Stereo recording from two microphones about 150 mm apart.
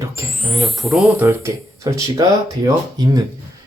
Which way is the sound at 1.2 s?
15° right (ahead or behind).